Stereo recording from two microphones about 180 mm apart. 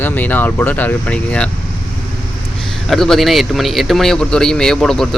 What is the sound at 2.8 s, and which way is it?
A man's voice, centre (ahead or behind).